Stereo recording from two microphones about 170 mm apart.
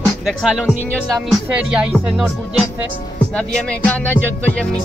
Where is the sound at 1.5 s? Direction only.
5° right (ahead or behind).